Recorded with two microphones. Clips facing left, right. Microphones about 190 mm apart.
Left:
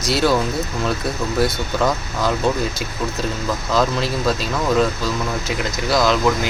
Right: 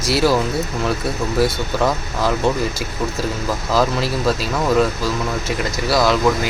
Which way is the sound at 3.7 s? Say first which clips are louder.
Right 1 dB; 5° right (ahead or behind).